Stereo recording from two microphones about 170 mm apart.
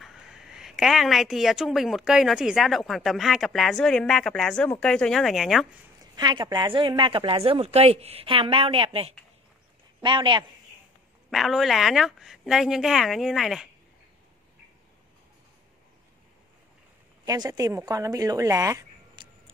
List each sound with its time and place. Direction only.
0.0 s a woman's voice: centre (ahead or behind)
6.1 s speech: 25° right (ahead or behind)
11.2 s a woman's voice: centre (ahead or behind)
17.2 s speech: 20° right (ahead or behind)